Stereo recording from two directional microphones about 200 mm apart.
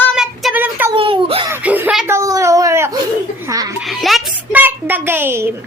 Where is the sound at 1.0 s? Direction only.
25° right (ahead or behind).